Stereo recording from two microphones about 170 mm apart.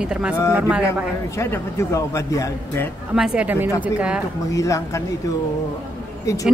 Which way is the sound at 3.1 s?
5° right (ahead or behind).